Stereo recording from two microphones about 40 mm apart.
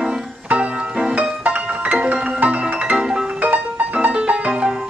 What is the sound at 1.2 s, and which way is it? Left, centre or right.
Music, right.